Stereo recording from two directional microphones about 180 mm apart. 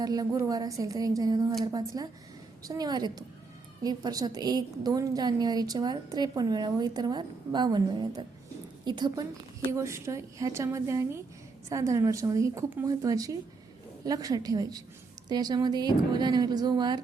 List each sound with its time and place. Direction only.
0.0 s a woman's voice: 20° right (ahead or behind)